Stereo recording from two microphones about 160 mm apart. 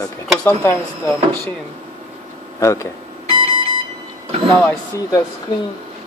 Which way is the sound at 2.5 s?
20° left (ahead or behind).